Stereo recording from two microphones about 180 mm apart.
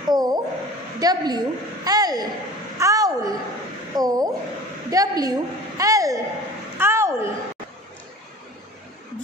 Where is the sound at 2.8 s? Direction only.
20° right (ahead or behind).